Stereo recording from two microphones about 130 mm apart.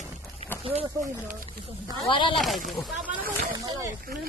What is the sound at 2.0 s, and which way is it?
Speech, 40° left (ahead or behind).